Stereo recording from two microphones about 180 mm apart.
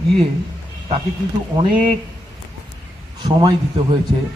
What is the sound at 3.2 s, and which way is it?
Speech, 25° right (ahead or behind).